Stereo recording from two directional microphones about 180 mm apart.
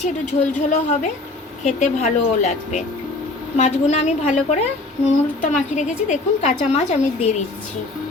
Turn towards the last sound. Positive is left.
turn(degrees=40)  # may be behind; listen again after turning